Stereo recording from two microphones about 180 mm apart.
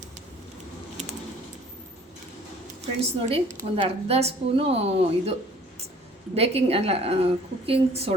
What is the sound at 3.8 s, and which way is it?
Speech, 35° right (ahead or behind).